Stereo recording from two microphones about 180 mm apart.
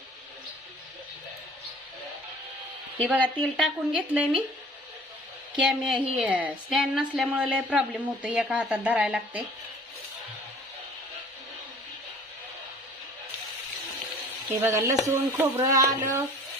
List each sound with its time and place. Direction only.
3.2 s a woman's voice: 5° right (ahead or behind)
5.5 s a woman's voice: 5° right (ahead or behind)
14.6 s a woman's voice: 15° right (ahead or behind)